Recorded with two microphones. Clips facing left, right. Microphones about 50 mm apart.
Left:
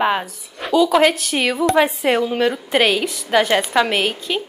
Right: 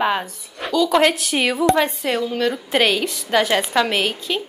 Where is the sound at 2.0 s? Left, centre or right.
Left.